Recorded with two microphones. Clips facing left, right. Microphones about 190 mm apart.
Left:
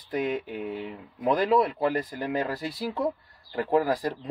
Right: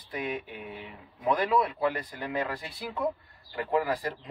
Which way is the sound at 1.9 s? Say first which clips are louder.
Left 5 dB; 45° left (ahead or behind).